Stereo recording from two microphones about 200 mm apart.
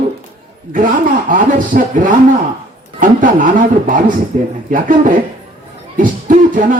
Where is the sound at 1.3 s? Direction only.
40° right (ahead or behind).